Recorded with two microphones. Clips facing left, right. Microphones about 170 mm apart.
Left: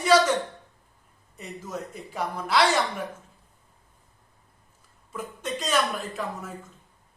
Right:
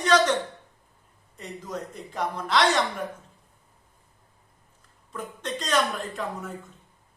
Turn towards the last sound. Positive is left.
turn(degrees=0)  # may be behind; listen again after turning